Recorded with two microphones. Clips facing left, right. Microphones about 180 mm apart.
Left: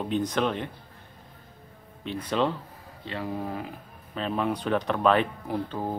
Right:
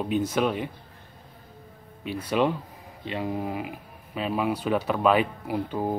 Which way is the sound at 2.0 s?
10° right (ahead or behind).